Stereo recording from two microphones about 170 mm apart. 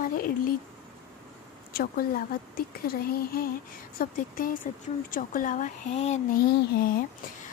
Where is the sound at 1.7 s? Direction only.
60° left (ahead or behind); by 6.2 s 40° left (ahead or behind).